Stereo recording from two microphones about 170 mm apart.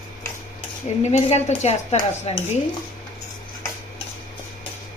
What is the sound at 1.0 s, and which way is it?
Speech, 40° left (ahead or behind).